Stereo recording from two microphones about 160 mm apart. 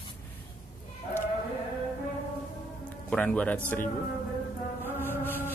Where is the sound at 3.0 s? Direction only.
10° left (ahead or behind).